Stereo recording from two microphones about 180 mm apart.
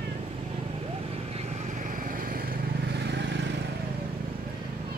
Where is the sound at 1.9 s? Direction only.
50° right (ahead or behind); by 3.4 s 70° right (ahead or behind).